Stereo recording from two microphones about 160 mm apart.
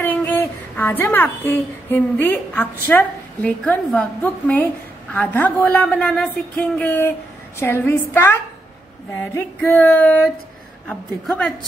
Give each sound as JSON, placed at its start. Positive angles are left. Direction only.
{"t": 0.1, "sound": "a woman's voice", "side_deg": 10}